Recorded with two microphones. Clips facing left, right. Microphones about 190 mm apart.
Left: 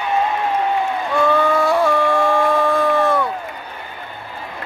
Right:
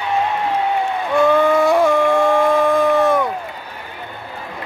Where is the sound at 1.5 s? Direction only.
20° right (ahead or behind).